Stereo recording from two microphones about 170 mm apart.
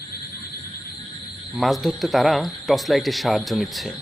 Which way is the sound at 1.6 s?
Centre (ahead or behind).